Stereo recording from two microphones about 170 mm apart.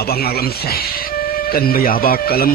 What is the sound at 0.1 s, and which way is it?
Speech, 65° left (ahead or behind).